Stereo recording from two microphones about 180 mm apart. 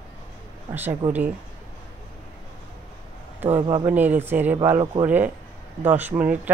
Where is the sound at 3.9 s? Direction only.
10° right (ahead or behind).